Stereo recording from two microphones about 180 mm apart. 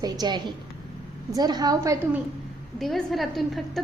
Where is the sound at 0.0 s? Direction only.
25° right (ahead or behind).